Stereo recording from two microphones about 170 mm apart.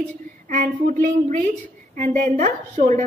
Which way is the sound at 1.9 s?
50° right (ahead or behind).